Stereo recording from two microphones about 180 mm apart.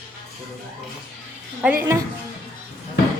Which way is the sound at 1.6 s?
15° right (ahead or behind).